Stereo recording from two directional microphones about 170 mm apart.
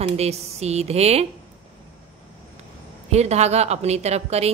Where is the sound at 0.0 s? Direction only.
40° right (ahead or behind).